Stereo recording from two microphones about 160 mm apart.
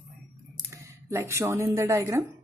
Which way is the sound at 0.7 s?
20° right (ahead or behind).